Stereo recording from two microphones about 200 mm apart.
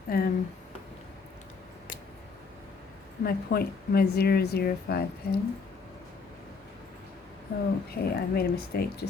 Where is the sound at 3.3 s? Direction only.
50° left (ahead or behind).